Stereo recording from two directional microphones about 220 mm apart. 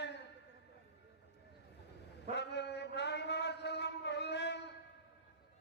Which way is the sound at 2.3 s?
50° left (ahead or behind).